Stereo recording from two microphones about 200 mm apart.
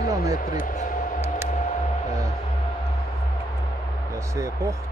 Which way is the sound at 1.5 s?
35° left (ahead or behind).